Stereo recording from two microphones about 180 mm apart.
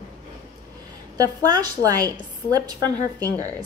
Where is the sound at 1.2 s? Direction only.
20° right (ahead or behind).